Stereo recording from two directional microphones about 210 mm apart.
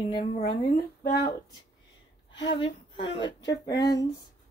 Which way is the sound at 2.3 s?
60° left (ahead or behind).